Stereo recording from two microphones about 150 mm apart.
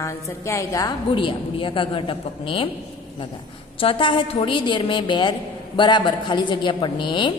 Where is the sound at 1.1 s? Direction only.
35° left (ahead or behind).